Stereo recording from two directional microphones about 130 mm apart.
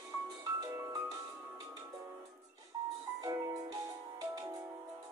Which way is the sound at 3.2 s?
25° right (ahead or behind).